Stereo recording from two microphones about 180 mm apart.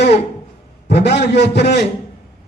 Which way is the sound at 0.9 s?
70° left (ahead or behind).